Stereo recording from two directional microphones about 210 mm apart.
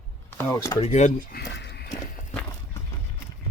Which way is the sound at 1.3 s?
55° left (ahead or behind).